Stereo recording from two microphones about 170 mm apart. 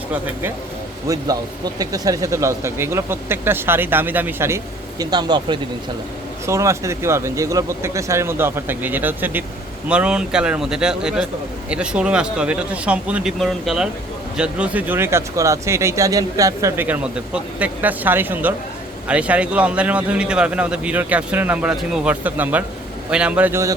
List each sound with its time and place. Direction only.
1.0 s speech: 20° right (ahead or behind)